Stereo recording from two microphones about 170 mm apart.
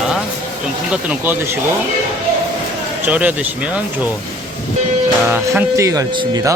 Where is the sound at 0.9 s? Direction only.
10° right (ahead or behind).